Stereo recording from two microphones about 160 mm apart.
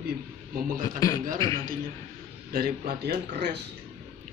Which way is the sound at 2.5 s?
75° right (ahead or behind).